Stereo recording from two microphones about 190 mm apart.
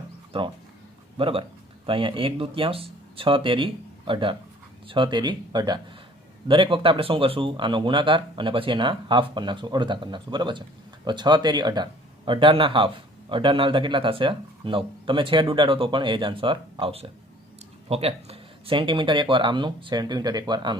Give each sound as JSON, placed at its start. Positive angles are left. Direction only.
{"t": 0.3, "sound": "speech", "side_deg": -25}